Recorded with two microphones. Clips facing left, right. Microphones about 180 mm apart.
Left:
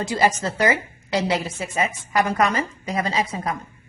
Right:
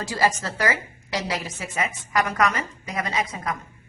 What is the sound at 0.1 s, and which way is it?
A woman's voice, 20° left (ahead or behind).